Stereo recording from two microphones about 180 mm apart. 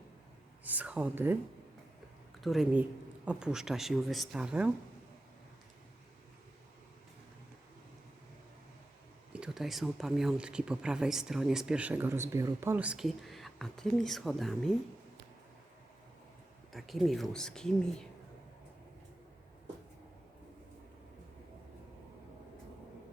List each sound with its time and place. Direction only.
0.6 s a sound: 10° right (ahead or behind)
2.4 s speech: centre (ahead or behind)
9.3 s speech: 5° right (ahead or behind)
16.7 s speech: centre (ahead or behind)